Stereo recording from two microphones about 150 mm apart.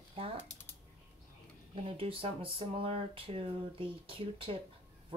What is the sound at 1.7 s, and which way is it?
Speech, 35° right (ahead or behind).